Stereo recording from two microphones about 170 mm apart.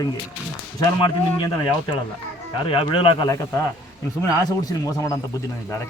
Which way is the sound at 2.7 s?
30° left (ahead or behind).